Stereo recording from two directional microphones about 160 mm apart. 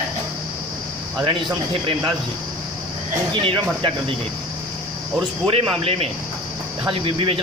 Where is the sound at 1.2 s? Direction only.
35° right (ahead or behind).